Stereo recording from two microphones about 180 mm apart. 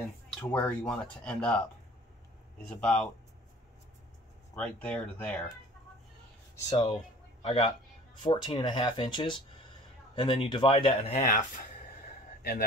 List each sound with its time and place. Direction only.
0.3 s speech: 5° left (ahead or behind)
2.7 s speech: 5° left (ahead or behind)
4.6 s speech: 5° left (ahead or behind)
7.4 s a man's voice: 30° left (ahead or behind)
12.4 s speech: 55° left (ahead or behind)